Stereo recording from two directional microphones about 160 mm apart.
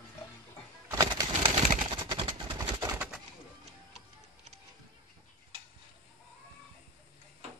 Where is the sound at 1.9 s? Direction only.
30° right (ahead or behind).